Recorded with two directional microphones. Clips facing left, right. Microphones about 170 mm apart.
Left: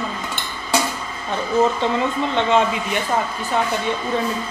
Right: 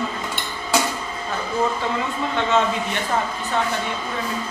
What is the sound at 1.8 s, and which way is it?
Speech, 25° left (ahead or behind).